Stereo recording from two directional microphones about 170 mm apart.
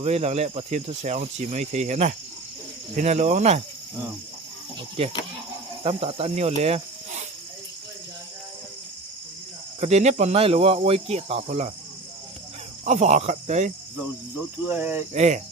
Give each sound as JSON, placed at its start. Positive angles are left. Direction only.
{"t": 0.0, "sound": "speech", "side_deg": -40}
{"t": 5.8, "sound": "cricket", "side_deg": -35}
{"t": 9.8, "sound": "cricket", "side_deg": -40}
{"t": 12.8, "sound": "speech", "side_deg": -45}
{"t": 13.9, "sound": "cricket", "side_deg": -10}
{"t": 15.1, "sound": "speech", "side_deg": -45}